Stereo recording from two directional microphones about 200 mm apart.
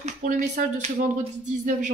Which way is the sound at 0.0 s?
35° right (ahead or behind).